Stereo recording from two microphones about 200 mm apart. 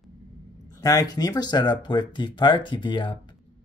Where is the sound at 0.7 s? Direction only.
20° left (ahead or behind).